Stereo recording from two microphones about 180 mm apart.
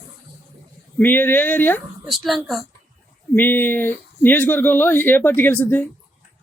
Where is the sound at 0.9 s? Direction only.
10° left (ahead or behind).